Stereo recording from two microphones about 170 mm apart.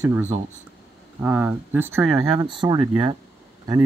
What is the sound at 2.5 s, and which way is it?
Speech, 25° right (ahead or behind).